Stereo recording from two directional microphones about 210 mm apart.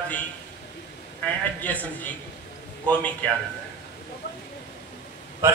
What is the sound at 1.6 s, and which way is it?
Speech, 5° left (ahead or behind).